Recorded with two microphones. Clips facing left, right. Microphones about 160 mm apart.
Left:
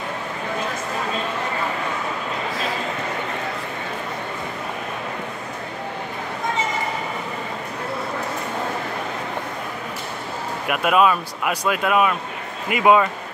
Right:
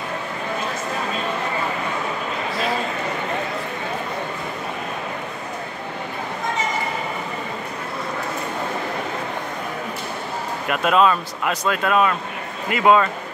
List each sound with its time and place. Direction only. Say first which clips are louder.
10.7 s speech: even; 10° left (ahead or behind)